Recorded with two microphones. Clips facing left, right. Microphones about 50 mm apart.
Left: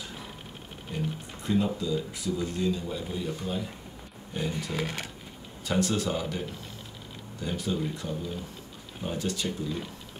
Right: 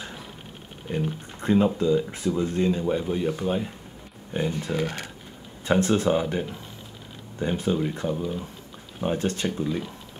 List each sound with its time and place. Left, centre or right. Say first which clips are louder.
0.9 s speech: right 5 dB; right